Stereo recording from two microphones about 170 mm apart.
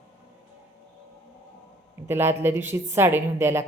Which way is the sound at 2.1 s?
15° right (ahead or behind).